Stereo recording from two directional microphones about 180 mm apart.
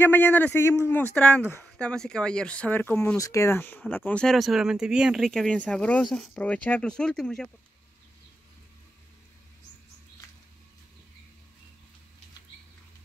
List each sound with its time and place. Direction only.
0.0 s speech: 10° left (ahead or behind)